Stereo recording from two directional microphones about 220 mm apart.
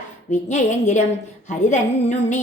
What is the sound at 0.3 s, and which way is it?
A woman's voice, 35° left (ahead or behind).